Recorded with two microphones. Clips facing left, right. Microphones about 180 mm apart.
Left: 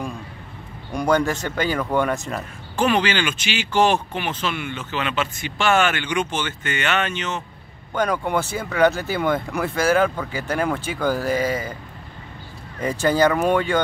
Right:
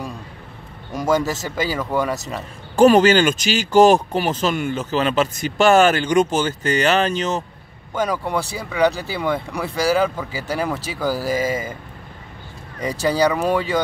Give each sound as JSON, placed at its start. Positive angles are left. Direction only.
{"t": 1.0, "sound": "speech", "side_deg": -5}
{"t": 2.7, "sound": "speech", "side_deg": -40}
{"t": 7.9, "sound": "speech", "side_deg": -5}
{"t": 13.0, "sound": "speech", "side_deg": 0}